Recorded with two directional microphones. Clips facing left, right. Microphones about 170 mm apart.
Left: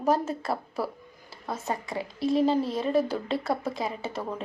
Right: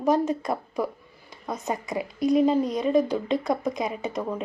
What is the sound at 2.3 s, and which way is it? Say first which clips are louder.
Speech: right 3 dB; 30° left (ahead or behind).